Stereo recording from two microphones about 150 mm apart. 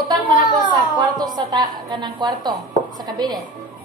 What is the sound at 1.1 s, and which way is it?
Speech, 25° right (ahead or behind).